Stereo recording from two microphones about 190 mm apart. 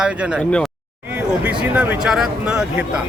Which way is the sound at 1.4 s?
5° right (ahead or behind).